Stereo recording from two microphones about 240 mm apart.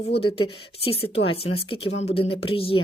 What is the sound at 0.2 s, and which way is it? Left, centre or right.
Speech, left.